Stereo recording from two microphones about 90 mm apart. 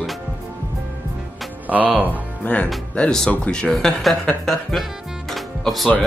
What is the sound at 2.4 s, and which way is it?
Speech, 15° left (ahead or behind).